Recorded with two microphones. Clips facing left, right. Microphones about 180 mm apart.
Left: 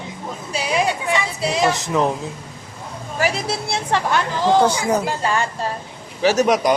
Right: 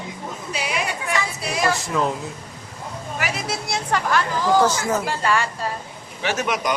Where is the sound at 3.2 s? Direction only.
30° left (ahead or behind).